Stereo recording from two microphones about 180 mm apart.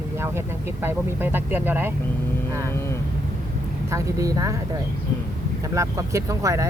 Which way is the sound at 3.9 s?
20° right (ahead or behind).